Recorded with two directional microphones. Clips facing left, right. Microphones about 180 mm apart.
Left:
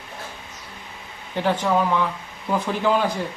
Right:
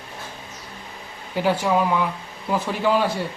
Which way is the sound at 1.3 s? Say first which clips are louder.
Right 1 dB; 10° right (ahead or behind).